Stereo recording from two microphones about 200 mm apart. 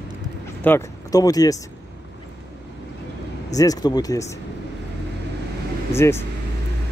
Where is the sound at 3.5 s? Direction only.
20° left (ahead or behind).